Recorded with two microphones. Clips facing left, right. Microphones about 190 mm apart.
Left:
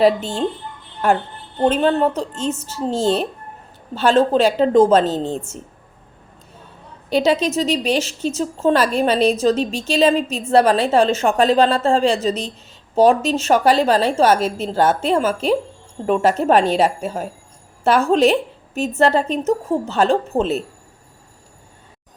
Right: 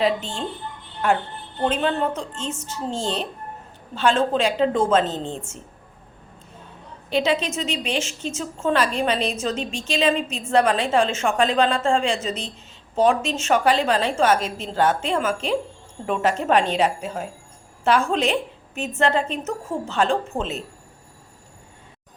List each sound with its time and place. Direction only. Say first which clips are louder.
1.6 s a woman's voice: left 6 dB; 40° left (ahead or behind)
7.1 s a woman's voice: left 5 dB; 40° left (ahead or behind)